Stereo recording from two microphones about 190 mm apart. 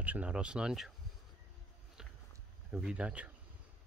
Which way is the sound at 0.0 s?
10° right (ahead or behind).